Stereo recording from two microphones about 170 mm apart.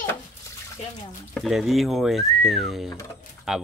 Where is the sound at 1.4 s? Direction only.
Centre (ahead or behind).